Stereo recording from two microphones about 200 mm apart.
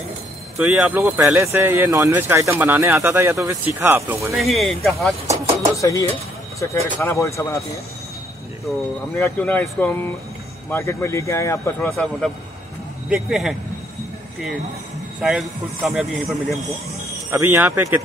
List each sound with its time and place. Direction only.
0.6 s speech: 5° right (ahead or behind)
4.3 s speech: centre (ahead or behind)
5.8 s speech: 15° left (ahead or behind)
9.1 s speech: 10° left (ahead or behind)
11.9 s speech: centre (ahead or behind)
15.2 s speech: centre (ahead or behind)